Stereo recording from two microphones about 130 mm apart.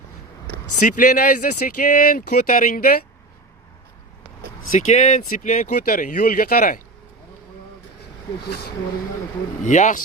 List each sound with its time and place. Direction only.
0.8 s speech: 90° left
4.8 s speech: 60° left (ahead or behind); by 6.8 s 90° left
9.6 s speech: 75° left (ahead or behind)